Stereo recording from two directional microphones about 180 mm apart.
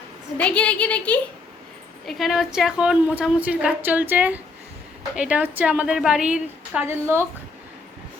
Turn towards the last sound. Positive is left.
turn(degrees=-15)  # may be behind; listen again after turning